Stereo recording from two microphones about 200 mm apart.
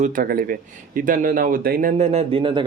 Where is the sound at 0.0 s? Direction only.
45° right (ahead or behind).